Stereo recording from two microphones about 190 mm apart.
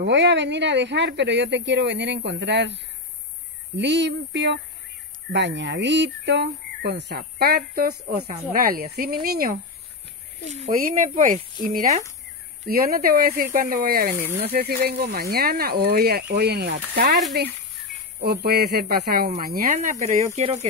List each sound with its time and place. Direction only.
0.0 s speech: 65° right (ahead or behind)
10.5 s speech: 40° right (ahead or behind)
18.2 s speech: 55° right (ahead or behind); by 20.6 s 35° right (ahead or behind)